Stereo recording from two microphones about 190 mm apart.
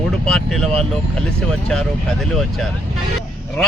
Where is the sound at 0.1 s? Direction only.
5° left (ahead or behind).